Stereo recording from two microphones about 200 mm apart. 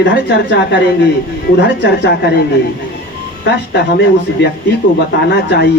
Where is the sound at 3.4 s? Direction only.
60° left (ahead or behind).